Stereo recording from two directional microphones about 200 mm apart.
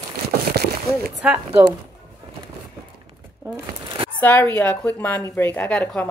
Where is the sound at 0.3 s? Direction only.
50° right (ahead or behind).